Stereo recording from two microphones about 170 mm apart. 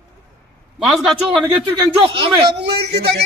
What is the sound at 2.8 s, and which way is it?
Speech, 70° right (ahead or behind).